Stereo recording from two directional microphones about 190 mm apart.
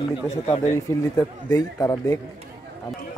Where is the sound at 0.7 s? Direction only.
15° left (ahead or behind).